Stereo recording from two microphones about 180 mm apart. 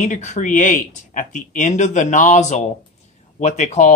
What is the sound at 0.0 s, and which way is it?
Speech, 40° left (ahead or behind).